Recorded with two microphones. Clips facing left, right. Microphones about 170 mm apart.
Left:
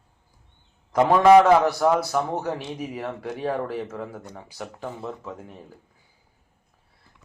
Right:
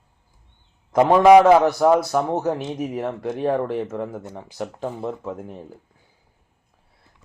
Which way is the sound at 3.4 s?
15° right (ahead or behind).